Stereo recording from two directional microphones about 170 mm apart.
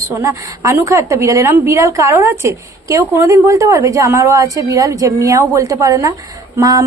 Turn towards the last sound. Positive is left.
turn(degrees=-20)  # may be behind; listen again after turning